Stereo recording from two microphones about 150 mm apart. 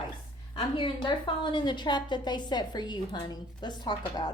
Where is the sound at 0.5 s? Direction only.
35° left (ahead or behind).